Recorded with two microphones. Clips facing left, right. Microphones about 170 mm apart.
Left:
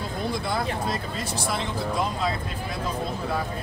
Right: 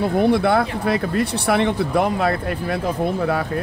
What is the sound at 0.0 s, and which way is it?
Speech, 65° right (ahead or behind).